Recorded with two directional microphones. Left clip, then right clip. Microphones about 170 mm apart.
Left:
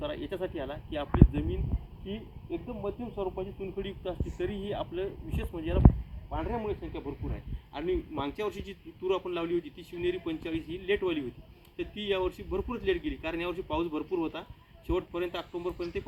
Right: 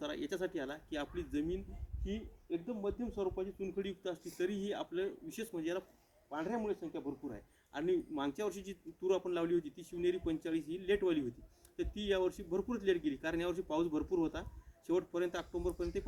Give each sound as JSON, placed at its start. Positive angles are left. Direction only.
{"t": 0.0, "sound": "a man's voice", "side_deg": -20}